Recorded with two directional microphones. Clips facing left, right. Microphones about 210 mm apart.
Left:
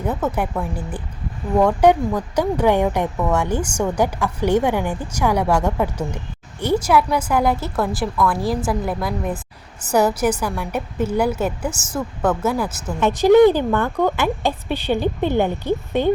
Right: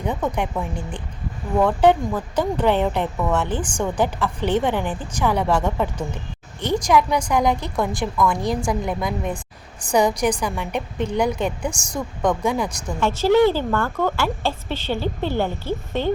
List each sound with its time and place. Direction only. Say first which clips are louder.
0.0 s a woman's voice: left 2 dB; 5° left (ahead or behind)
13.0 s a woman's voice: left 5 dB; 15° left (ahead or behind)